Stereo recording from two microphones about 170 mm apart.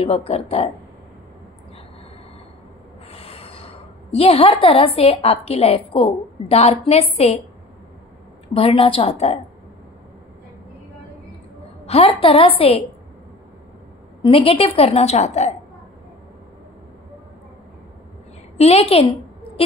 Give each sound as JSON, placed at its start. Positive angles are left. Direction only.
{"t": 0.0, "sound": "a woman's voice", "side_deg": 35}
{"t": 3.1, "sound": "a woman's voice", "side_deg": 35}
{"t": 8.5, "sound": "a woman's voice", "side_deg": 35}
{"t": 11.8, "sound": "a woman's voice", "side_deg": 35}
{"t": 14.2, "sound": "a woman's voice", "side_deg": 35}
{"t": 18.6, "sound": "a woman's voice", "side_deg": 35}